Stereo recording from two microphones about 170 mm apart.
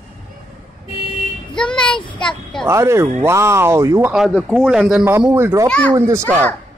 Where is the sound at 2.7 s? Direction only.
15° right (ahead or behind).